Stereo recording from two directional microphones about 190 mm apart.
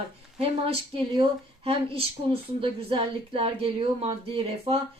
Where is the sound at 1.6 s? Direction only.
30° right (ahead or behind).